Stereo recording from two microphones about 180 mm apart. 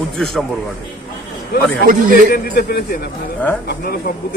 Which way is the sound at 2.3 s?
60° left (ahead or behind).